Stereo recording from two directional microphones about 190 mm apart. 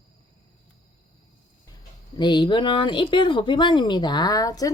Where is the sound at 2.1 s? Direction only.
25° left (ahead or behind).